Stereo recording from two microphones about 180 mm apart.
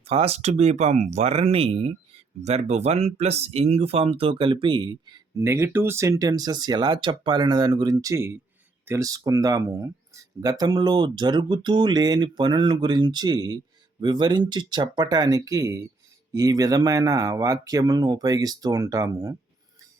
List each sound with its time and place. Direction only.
0.0 s speech: 35° right (ahead or behind); by 19.3 s 20° right (ahead or behind)